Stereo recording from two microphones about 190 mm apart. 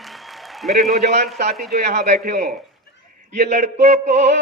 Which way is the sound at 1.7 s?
55° right (ahead or behind).